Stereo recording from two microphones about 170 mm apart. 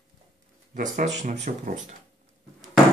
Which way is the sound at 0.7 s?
50° right (ahead or behind).